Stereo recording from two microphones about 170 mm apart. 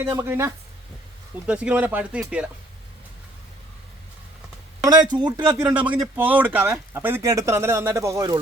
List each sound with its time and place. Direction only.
0.0 s speech: 15° right (ahead or behind)
4.8 s speech: 25° right (ahead or behind)
5.7 s speech: 10° right (ahead or behind)